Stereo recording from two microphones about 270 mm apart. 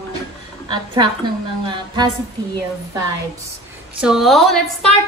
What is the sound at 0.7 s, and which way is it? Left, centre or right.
Speech, centre.